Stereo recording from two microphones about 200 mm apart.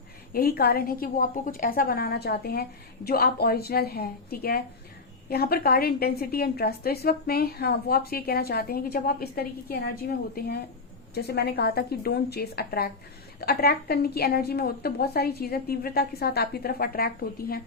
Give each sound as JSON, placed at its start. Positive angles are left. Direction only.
{"t": 0.3, "sound": "a woman's voice", "side_deg": 50}